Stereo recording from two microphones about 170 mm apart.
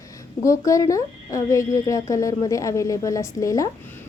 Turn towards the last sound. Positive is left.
turn(degrees=20)  # may be behind; listen again after turning